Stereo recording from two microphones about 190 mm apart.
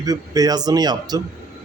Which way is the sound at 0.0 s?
20° right (ahead or behind).